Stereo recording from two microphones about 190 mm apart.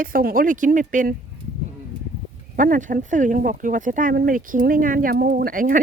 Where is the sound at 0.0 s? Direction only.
50° right (ahead or behind).